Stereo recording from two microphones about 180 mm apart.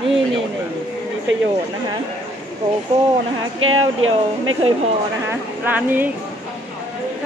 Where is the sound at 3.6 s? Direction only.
90° right.